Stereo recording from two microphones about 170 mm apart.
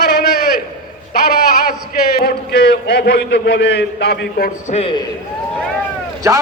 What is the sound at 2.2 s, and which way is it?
A man's voice, 70° left (ahead or behind).